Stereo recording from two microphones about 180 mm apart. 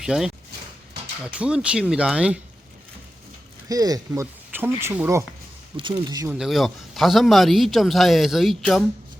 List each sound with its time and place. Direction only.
0.0 s a man's voice: centre (ahead or behind)
3.7 s speech: 20° right (ahead or behind)
5.7 s speech: 25° right (ahead or behind)
6.2 s a man's voice: 5° right (ahead or behind)